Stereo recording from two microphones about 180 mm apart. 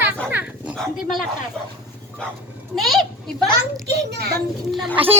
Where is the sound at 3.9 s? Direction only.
65° right (ahead or behind).